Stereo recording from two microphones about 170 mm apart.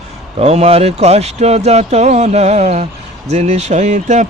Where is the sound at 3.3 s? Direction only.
40° right (ahead or behind).